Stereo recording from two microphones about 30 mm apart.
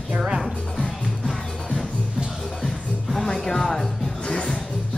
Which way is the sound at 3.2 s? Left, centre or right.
Centre.